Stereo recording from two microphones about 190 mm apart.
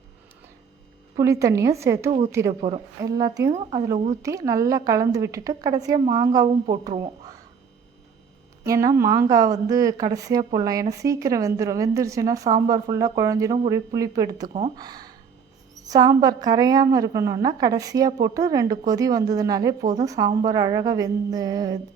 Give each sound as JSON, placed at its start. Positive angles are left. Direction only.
{"t": 1.2, "sound": "speech", "side_deg": -15}
{"t": 2.6, "sound": "speech", "side_deg": -30}
{"t": 3.0, "sound": "a woman's voice", "side_deg": -20}
{"t": 3.5, "sound": "speech", "side_deg": -30}
{"t": 4.2, "sound": "a woman's voice", "side_deg": -15}
{"t": 8.6, "sound": "a woman's voice", "side_deg": -15}